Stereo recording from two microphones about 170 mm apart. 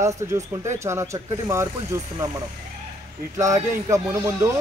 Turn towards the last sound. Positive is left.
turn(degrees=-15)  # may be behind; listen again after turning